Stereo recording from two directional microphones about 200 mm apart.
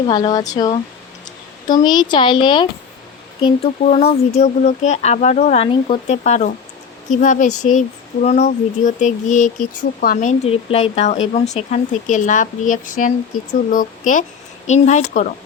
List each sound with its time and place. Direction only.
0.1 s speech: 20° left (ahead or behind); by 13.1 s 40° left (ahead or behind)
14.7 s speech: 35° left (ahead or behind)